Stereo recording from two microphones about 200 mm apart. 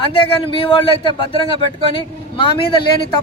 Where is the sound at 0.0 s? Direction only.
25° left (ahead or behind).